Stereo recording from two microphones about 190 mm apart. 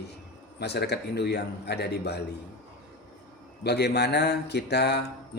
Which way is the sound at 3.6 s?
60° left (ahead or behind).